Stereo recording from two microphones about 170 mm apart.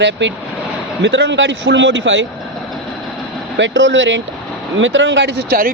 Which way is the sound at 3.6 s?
90° right.